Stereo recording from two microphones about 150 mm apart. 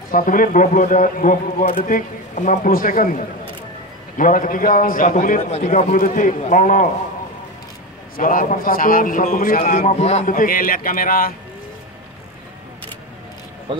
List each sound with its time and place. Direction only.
0.1 s a man's voice: 65° left (ahead or behind)
8.2 s a man's voice: 65° left (ahead or behind); by 10.3 s 45° left (ahead or behind)
10.3 s speech: 70° left (ahead or behind)
13.7 s speech: 35° right (ahead or behind)